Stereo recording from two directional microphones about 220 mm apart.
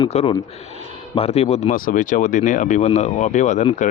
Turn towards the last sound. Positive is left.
turn(degrees=35)  # may be behind; listen again after turning